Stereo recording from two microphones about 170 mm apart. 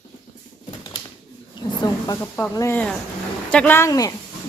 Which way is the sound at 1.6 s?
20° left (ahead or behind).